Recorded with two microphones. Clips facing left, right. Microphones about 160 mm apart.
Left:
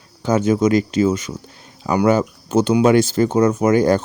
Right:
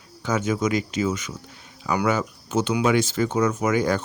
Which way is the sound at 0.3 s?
35° left (ahead or behind).